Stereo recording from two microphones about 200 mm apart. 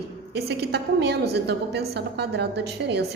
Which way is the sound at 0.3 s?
55° right (ahead or behind).